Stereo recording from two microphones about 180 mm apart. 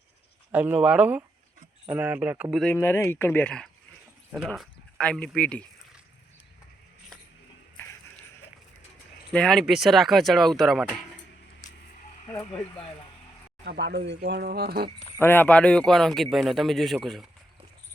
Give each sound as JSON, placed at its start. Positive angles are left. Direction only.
{"t": 0.5, "sound": "speech", "side_deg": -10}
{"t": 2.7, "sound": "speech", "side_deg": 15}
{"t": 9.3, "sound": "a man's voice", "side_deg": 5}
{"t": 13.7, "sound": "speech", "side_deg": -70}
{"t": 15.2, "sound": "a man's voice", "side_deg": 10}